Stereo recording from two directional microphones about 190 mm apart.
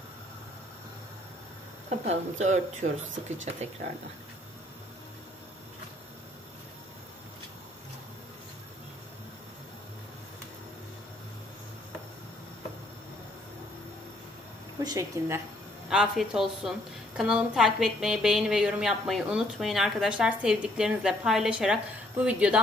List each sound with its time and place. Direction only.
1.9 s speech: 35° right (ahead or behind)
14.8 s speech: 20° right (ahead or behind)
15.9 s a woman's voice: centre (ahead or behind)